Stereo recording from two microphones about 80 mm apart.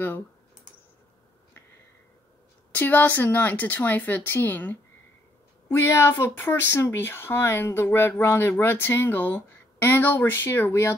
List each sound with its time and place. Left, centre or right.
2.7 s speech: left
5.7 s speech: left